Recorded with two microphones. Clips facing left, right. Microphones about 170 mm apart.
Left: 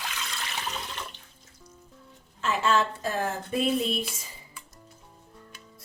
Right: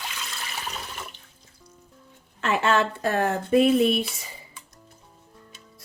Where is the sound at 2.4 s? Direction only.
65° right (ahead or behind).